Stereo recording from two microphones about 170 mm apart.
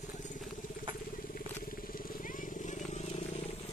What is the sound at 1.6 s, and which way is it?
Vehicle, 55° left (ahead or behind).